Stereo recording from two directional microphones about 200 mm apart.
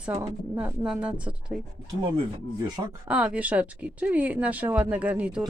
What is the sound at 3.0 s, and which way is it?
Speech, 5° right (ahead or behind).